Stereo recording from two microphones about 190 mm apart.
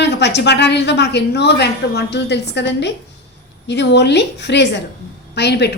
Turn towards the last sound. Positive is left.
turn(degrees=60)  # may be behind; listen again after turning